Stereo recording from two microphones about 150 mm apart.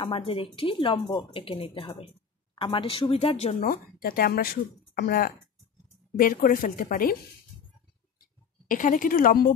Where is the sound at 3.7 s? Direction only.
80° left.